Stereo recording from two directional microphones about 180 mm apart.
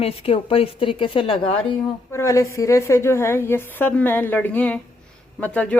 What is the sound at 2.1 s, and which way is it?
A woman's voice, 15° left (ahead or behind).